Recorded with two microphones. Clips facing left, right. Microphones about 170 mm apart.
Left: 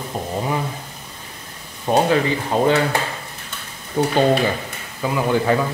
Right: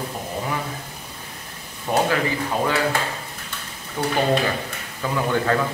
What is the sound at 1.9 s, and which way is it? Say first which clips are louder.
Speech: left 4 dB; 25° left (ahead or behind).